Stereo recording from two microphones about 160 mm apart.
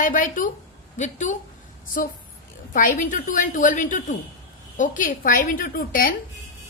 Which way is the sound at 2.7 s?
55° left (ahead or behind).